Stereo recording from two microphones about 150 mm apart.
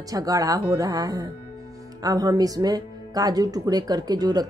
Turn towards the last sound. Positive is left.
turn(degrees=-25)  # may be behind; listen again after turning